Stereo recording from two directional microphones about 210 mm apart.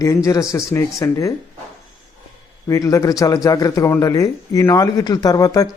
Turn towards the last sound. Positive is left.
turn(degrees=15)  # may be behind; listen again after turning